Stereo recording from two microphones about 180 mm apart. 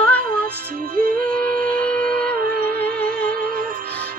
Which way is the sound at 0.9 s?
50° right (ahead or behind).